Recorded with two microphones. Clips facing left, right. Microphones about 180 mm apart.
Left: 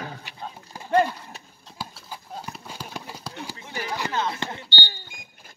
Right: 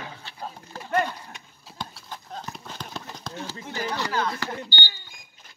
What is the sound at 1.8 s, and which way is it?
Clip-clop, 5° left (ahead or behind).